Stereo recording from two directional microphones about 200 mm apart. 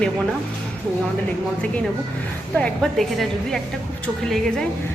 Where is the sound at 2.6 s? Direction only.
Centre (ahead or behind).